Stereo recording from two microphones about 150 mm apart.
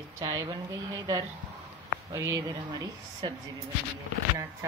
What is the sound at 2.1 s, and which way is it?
Speech, 25° right (ahead or behind).